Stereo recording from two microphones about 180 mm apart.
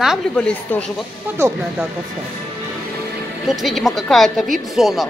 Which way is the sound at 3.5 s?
Centre (ahead or behind).